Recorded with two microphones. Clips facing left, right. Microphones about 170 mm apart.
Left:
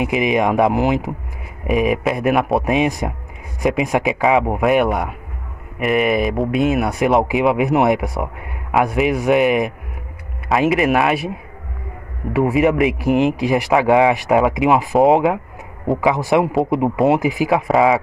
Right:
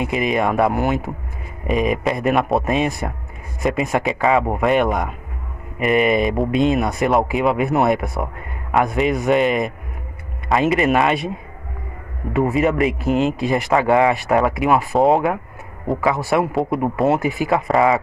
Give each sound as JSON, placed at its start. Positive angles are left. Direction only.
{"t": 0.0, "sound": "speech", "side_deg": 15}
{"t": 4.0, "sound": "speech", "side_deg": 0}
{"t": 12.4, "sound": "speech", "side_deg": 10}
{"t": 17.5, "sound": "speech", "side_deg": 5}